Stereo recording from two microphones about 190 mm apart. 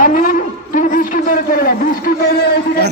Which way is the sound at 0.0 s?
45° left (ahead or behind).